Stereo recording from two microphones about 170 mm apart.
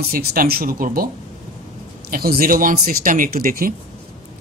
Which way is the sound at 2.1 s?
60° right (ahead or behind).